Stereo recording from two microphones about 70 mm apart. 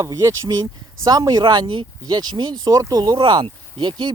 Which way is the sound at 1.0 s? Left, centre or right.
Right.